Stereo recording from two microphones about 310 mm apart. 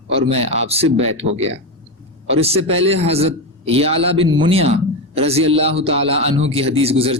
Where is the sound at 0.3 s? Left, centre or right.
Centre.